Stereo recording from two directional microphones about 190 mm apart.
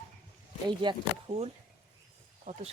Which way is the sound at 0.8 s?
25° right (ahead or behind).